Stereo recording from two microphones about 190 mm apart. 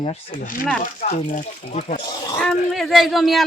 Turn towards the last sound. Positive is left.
turn(degrees=0)  # may be behind; listen again after turning